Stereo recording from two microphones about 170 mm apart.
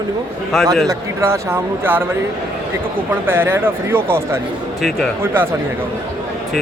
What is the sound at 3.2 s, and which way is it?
Speech, 15° right (ahead or behind).